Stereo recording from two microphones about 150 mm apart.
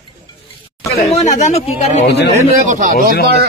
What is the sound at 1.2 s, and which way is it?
Speech, 50° left (ahead or behind).